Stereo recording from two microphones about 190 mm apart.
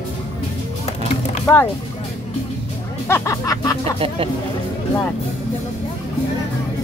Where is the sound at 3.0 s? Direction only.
15° left (ahead or behind).